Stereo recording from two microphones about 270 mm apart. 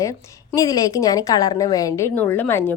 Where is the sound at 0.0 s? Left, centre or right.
Centre.